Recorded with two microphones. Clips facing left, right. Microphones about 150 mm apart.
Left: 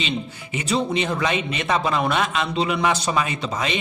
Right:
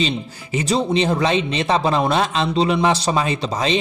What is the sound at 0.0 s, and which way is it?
Speech, 35° right (ahead or behind).